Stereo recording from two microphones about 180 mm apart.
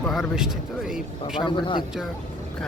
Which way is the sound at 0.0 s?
Centre (ahead or behind).